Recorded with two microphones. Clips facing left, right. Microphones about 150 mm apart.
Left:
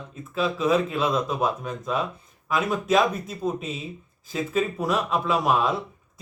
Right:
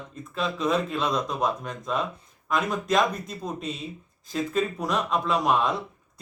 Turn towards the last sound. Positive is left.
turn(degrees=5)  # may be behind; listen again after turning